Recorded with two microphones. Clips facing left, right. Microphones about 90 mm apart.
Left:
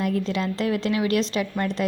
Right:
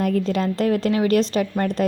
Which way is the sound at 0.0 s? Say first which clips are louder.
Right 4 dB; 45° right (ahead or behind).